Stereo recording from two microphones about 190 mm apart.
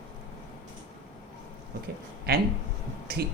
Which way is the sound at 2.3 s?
55° right (ahead or behind).